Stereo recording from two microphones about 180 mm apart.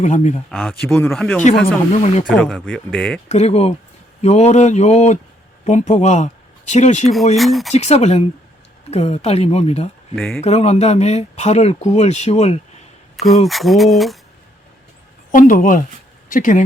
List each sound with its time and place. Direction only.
0.0 s speech: 40° left (ahead or behind)
0.5 s speech: centre (ahead or behind)
1.6 s speech: 40° left (ahead or behind)
2.3 s speech: centre (ahead or behind)
3.2 s speech: 40° left (ahead or behind)
7.3 s speech: centre (ahead or behind)
7.7 s speech: 40° left (ahead or behind)
10.2 s speech: 5° left (ahead or behind)
10.4 s speech: 35° left (ahead or behind)
13.1 s speech: centre (ahead or behind)
15.3 s speech: 45° left (ahead or behind)